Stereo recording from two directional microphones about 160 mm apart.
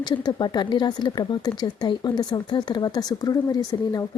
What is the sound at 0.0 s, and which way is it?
Speech, 25° left (ahead or behind).